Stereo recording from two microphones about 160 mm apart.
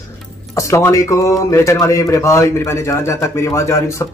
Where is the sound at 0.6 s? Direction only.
20° left (ahead or behind).